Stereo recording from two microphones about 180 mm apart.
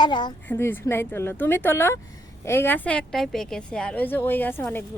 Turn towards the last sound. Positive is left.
turn(degrees=10)  # may be behind; listen again after turning